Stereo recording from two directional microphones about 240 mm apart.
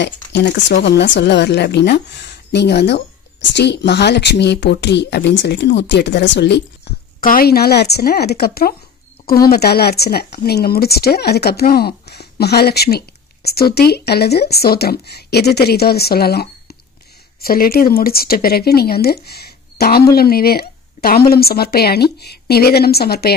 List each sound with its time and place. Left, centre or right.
0.0 s a woman's voice: left